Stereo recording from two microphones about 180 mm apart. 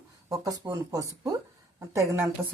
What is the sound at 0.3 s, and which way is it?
Speech, 20° right (ahead or behind).